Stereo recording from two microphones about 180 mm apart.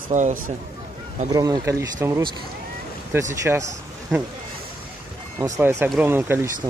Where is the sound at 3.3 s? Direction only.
15° right (ahead or behind).